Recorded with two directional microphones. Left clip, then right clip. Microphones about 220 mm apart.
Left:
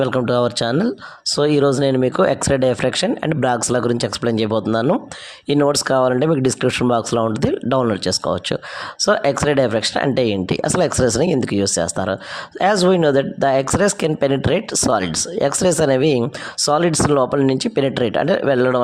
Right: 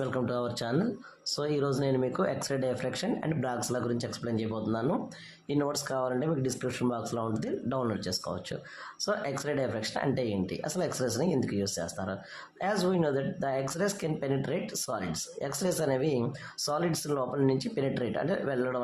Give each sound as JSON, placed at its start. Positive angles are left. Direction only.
{"t": 0.0, "sound": "speech", "side_deg": 35}